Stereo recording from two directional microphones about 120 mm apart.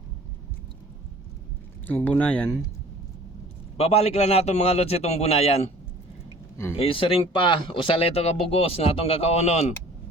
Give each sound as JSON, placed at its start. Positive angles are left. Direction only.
{"t": 1.9, "sound": "speech", "side_deg": 15}
{"t": 3.8, "sound": "a man's voice", "side_deg": 60}
{"t": 6.7, "sound": "speech", "side_deg": 50}